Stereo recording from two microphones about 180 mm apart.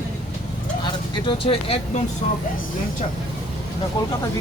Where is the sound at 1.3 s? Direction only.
30° left (ahead or behind).